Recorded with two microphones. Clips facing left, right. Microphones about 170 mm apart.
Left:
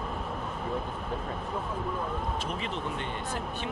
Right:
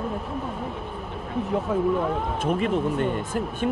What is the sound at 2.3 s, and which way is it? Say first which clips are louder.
Speech: right 10 dB; 50° right (ahead or behind).